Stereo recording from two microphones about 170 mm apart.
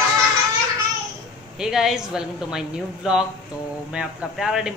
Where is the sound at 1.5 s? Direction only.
5° right (ahead or behind).